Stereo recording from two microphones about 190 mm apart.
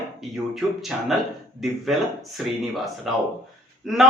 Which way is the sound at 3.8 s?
Centre (ahead or behind).